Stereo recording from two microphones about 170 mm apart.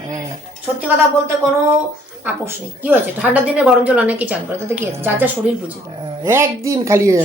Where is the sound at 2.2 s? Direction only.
10° right (ahead or behind).